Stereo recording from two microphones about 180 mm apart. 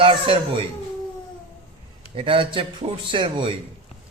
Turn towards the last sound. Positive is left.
turn(degrees=-30)  # may be behind; listen again after turning